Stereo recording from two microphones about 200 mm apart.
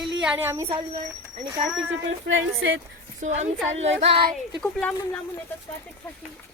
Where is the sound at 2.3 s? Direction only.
70° right (ahead or behind).